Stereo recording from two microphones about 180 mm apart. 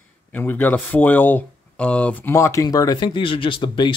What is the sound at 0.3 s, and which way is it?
A man's voice, 10° left (ahead or behind).